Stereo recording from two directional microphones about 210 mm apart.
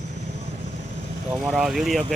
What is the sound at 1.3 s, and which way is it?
Speech, centre (ahead or behind).